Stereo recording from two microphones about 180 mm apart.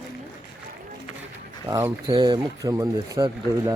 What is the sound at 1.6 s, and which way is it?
Speech, 20° right (ahead or behind).